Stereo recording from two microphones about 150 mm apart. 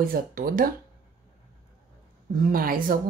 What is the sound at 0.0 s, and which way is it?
Speech, 75° right (ahead or behind).